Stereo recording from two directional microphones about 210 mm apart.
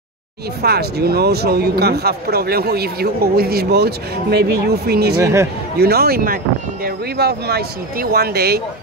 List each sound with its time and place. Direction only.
0.6 s speech: 50° right (ahead or behind)
5.2 s speech: 15° right (ahead or behind)
5.8 s speech: 45° right (ahead or behind)